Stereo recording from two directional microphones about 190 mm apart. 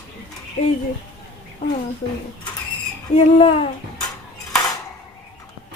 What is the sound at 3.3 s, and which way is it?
Speech, 30° left (ahead or behind).